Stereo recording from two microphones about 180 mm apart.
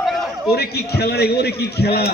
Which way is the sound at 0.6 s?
65° left (ahead or behind).